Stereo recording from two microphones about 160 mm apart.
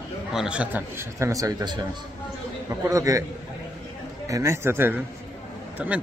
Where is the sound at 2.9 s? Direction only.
20° right (ahead or behind).